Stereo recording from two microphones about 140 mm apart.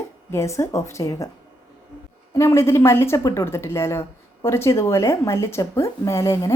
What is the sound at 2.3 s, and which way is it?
Speech, 20° left (ahead or behind).